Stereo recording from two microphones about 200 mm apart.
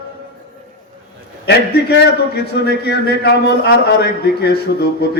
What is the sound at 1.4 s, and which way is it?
A man's voice, 55° left (ahead or behind).